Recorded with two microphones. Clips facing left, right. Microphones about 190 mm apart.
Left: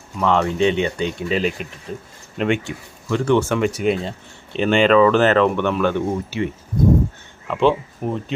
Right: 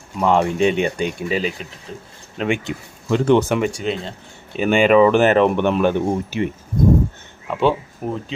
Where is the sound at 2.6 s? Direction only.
20° right (ahead or behind).